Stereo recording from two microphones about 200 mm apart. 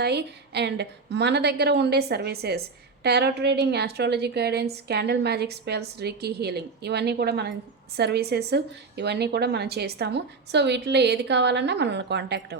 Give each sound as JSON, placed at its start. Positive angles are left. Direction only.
{"t": 0.0, "sound": "a woman's voice", "side_deg": -55}